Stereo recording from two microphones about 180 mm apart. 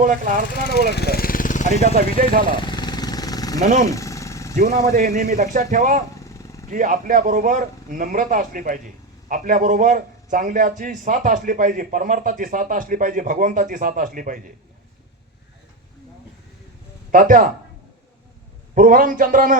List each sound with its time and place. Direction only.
0.9 s vehicle: 60° left (ahead or behind); by 1.7 s 45° left (ahead or behind)
1.8 s a man's voice: 50° right (ahead or behind)
2.6 s vehicle: 25° left (ahead or behind)
3.6 s speech: 40° right (ahead or behind)
3.8 s engine: 15° left (ahead or behind)
4.5 s a man's voice: 50° right (ahead or behind)
6.2 s vehicle: 15° left (ahead or behind)
6.7 s a man's voice: 45° right (ahead or behind)
17.1 s speech: 50° right (ahead or behind)
18.7 s a man's voice: 50° right (ahead or behind)